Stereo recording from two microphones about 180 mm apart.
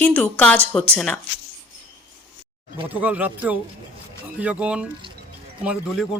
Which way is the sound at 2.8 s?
10° right (ahead or behind).